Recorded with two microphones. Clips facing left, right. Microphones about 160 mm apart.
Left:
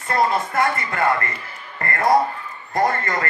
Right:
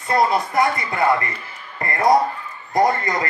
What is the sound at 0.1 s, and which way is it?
A man's voice, 15° right (ahead or behind).